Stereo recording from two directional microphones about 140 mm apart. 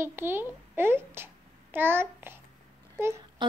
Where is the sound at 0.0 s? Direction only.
15° right (ahead or behind).